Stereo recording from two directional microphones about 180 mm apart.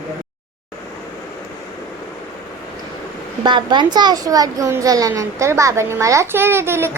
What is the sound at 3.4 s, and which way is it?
A child's voice, 25° right (ahead or behind).